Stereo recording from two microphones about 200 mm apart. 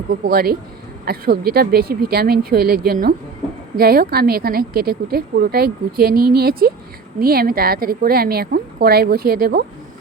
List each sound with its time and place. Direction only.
0.1 s a woman's voice: 50° right (ahead or behind)